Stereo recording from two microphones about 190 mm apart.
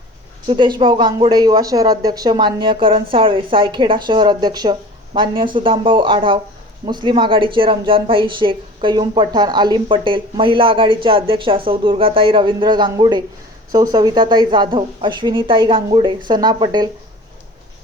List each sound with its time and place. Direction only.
0.4 s speech: 25° right (ahead or behind)